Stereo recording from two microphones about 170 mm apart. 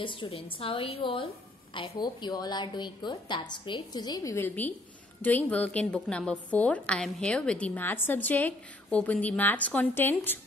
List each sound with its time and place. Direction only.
0.0 s a woman's voice: 30° left (ahead or behind); by 10.4 s 10° left (ahead or behind)